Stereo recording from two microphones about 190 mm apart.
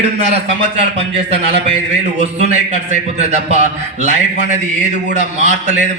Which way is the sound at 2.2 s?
35° right (ahead or behind).